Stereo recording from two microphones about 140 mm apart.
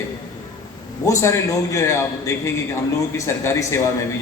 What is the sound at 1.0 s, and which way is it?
A man's voice, 20° left (ahead or behind).